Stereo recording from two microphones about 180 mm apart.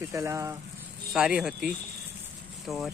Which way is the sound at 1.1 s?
5° right (ahead or behind).